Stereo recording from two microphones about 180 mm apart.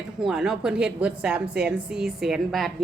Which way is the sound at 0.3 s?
5° right (ahead or behind).